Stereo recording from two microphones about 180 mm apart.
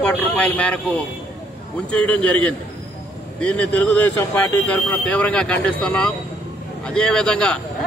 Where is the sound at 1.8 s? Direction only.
5° left (ahead or behind).